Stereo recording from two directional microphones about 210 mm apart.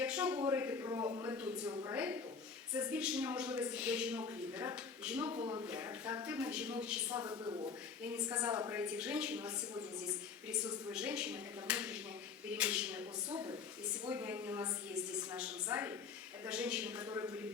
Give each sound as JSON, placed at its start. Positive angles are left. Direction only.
{"t": 0.0, "sound": "a woman's voice", "side_deg": -5}
{"t": 5.3, "sound": "speech", "side_deg": -25}
{"t": 5.6, "sound": "a woman's voice", "side_deg": -10}
{"t": 7.2, "sound": "a woman's voice", "side_deg": -20}
{"t": 10.9, "sound": "a woman's voice", "side_deg": -5}
{"t": 13.3, "sound": "speech", "side_deg": -20}
{"t": 14.1, "sound": "a woman's voice", "side_deg": -10}